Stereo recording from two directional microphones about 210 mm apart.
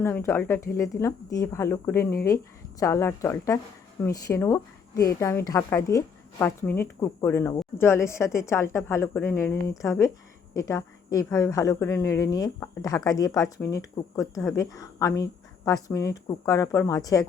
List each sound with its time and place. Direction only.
0.0 s a woman's voice: 10° left (ahead or behind)